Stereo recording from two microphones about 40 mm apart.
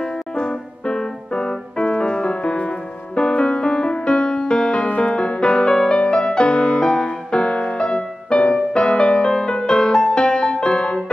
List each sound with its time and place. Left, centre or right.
0.0 s keyboard: centre
2.7 s music: left